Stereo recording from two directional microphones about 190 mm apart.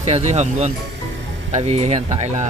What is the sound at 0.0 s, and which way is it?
Speech, 35° right (ahead or behind).